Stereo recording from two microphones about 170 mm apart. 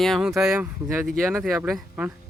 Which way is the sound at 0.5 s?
15° right (ahead or behind).